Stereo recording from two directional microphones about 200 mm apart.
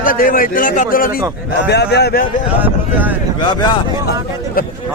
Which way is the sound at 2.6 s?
10° right (ahead or behind).